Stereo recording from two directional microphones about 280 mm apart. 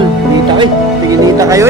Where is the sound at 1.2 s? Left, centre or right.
Centre.